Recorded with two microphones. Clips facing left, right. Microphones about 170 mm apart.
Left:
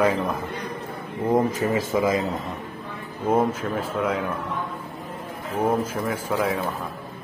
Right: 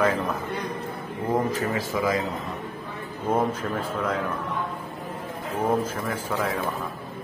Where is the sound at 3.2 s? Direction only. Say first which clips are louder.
Left 3 dB; 10° left (ahead or behind).